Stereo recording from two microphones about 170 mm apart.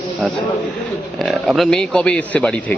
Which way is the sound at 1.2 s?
Centre (ahead or behind).